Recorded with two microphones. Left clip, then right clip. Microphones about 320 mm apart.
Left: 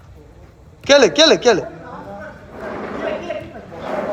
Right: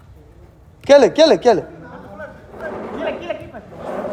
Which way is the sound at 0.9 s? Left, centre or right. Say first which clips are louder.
Right 1 dB; centre.